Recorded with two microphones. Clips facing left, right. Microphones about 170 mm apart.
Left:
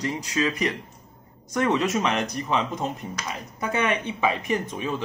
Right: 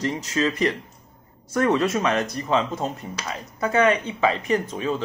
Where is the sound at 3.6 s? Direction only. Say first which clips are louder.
Right 6 dB; 15° left (ahead or behind).